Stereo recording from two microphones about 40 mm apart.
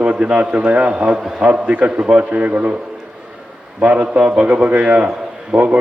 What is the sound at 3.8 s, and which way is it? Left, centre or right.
A man's voice, right.